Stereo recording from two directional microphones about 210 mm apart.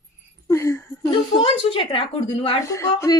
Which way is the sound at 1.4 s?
25° left (ahead or behind).